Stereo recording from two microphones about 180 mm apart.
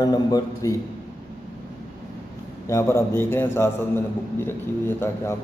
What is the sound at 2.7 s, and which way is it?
A man's voice, 15° left (ahead or behind).